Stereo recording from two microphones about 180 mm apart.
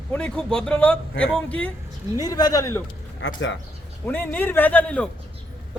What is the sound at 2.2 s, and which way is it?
Speech, 20° left (ahead or behind).